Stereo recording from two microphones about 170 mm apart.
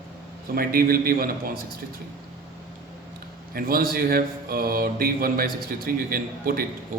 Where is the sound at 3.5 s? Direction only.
60° right (ahead or behind).